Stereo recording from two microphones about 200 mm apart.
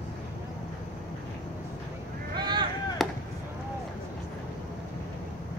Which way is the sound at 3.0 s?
Centre (ahead or behind).